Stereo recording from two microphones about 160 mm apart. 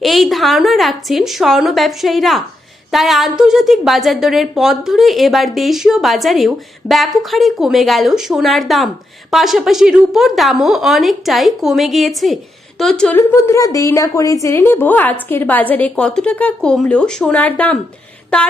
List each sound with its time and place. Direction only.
0.0 s a woman's voice: centre (ahead or behind)